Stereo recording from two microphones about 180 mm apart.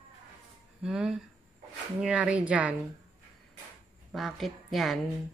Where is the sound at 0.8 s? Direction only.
5° right (ahead or behind).